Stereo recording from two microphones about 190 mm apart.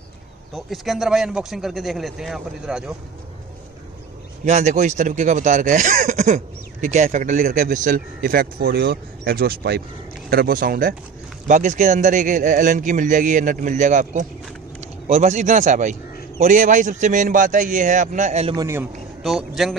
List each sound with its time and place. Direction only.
0.7 s speech: centre (ahead or behind)
4.5 s speech: 40° right (ahead or behind)
18.6 s a man's voice: 15° right (ahead or behind)
19.2 s speech: centre (ahead or behind)